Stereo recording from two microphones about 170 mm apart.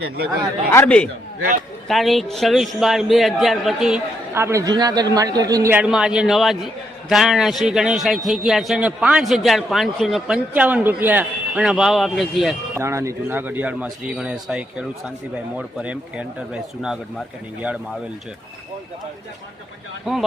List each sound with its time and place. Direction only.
0.7 s a man's voice: 10° left (ahead or behind)
4.4 s a man's voice: 15° right (ahead or behind)
5.7 s a man's voice: 5° right (ahead or behind)
12.7 s a man's voice: 15° right (ahead or behind)